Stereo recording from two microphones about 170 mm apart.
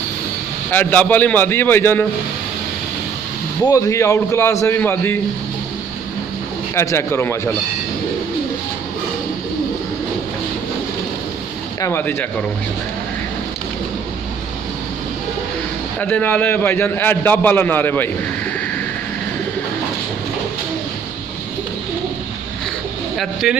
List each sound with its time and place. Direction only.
0.7 s a man's voice: 10° left (ahead or behind)
3.6 s a man's voice: 20° left (ahead or behind)
6.7 s a man's voice: 15° left (ahead or behind)
11.8 s a man's voice: 15° left (ahead or behind)
16.0 s a man's voice: 10° left (ahead or behind)
23.4 s speech: 5° right (ahead or behind)